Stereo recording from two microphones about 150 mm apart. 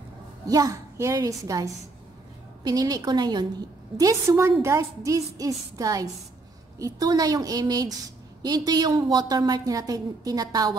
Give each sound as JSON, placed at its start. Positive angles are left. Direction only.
{"t": 0.5, "sound": "a woman's voice", "side_deg": -25}